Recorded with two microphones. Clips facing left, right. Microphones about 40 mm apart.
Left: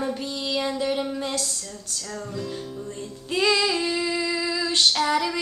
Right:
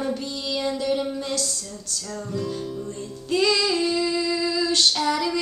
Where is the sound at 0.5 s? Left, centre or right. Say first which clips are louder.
Right 1 dB; centre.